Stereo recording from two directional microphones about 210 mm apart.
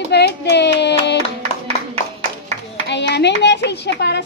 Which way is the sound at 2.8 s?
55° left (ahead or behind).